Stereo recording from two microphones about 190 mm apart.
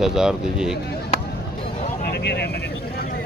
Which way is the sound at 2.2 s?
60° left (ahead or behind).